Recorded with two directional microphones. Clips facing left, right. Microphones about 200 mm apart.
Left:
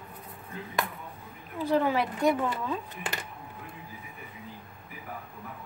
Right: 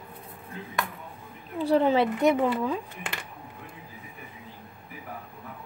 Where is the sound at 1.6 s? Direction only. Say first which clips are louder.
Right 4 dB; 30° right (ahead or behind).